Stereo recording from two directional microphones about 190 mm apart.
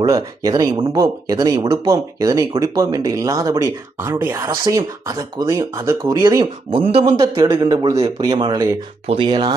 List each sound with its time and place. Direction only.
0.0 s a man's voice: 20° right (ahead or behind)